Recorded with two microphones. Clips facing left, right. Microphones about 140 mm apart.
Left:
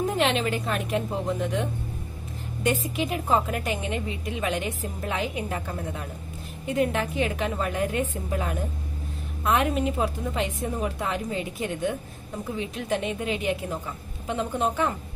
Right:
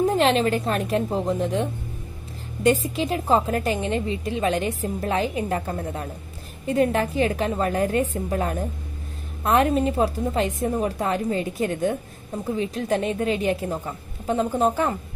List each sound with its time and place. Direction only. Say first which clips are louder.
0.2 s a woman's voice: right 5 dB; 40° right (ahead or behind)